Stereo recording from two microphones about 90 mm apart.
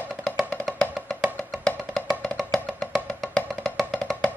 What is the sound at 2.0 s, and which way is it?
Music, 5° left (ahead or behind).